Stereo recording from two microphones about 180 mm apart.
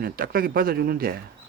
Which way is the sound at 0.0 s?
55° right (ahead or behind).